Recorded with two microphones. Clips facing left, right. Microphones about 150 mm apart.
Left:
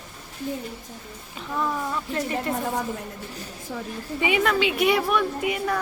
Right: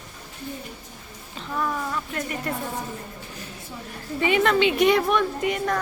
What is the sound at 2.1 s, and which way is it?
Speech, 30° left (ahead or behind).